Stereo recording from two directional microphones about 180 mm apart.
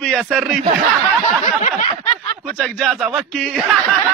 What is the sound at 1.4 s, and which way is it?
Snicker, 40° left (ahead or behind).